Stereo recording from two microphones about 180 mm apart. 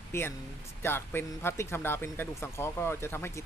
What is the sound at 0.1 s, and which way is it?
A man's voice, 15° left (ahead or behind).